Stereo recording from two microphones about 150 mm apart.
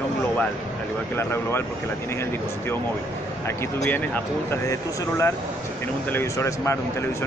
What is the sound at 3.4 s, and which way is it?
Speech, 15° left (ahead or behind).